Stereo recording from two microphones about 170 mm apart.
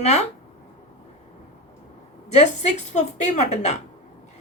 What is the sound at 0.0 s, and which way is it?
Speech, 40° left (ahead or behind).